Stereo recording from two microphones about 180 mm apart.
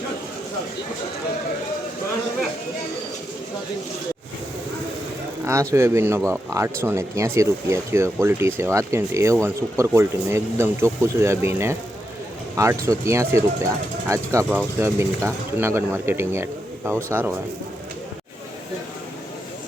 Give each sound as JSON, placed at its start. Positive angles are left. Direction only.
{"t": 5.5, "sound": "speech", "side_deg": -15}